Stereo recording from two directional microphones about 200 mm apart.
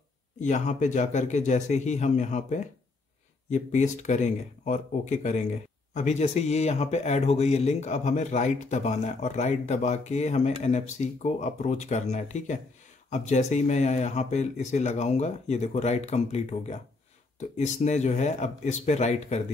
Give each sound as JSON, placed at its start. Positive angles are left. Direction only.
{"t": 0.4, "sound": "speech", "side_deg": 35}